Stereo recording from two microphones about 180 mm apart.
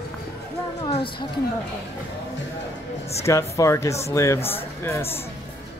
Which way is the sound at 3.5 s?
15° left (ahead or behind).